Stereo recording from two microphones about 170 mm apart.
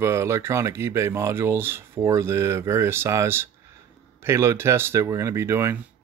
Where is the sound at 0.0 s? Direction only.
15° right (ahead or behind).